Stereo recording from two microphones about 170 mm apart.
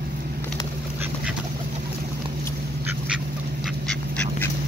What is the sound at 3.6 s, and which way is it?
Duck, 5° left (ahead or behind).